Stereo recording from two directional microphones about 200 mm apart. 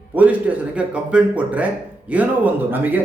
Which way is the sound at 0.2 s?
5° right (ahead or behind).